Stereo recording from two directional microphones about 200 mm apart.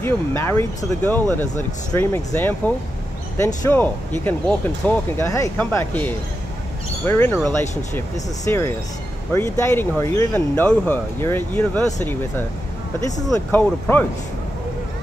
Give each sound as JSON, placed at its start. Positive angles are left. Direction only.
{"t": 0.0, "sound": "speech", "side_deg": 10}
{"t": 8.5, "sound": "speech", "side_deg": 15}